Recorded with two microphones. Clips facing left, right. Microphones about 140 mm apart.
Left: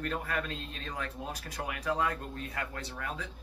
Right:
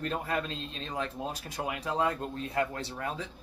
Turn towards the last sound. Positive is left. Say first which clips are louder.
# right 3 dB
turn(degrees=-30)  # may be behind; listen again after turning